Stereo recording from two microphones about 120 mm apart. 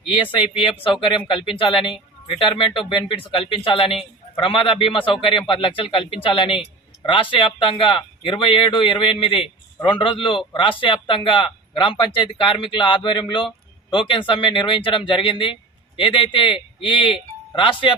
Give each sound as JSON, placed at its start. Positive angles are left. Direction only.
{"t": 0.1, "sound": "speech", "side_deg": 45}